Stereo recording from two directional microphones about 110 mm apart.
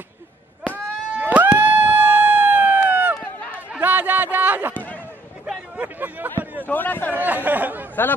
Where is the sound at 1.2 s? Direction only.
15° right (ahead or behind).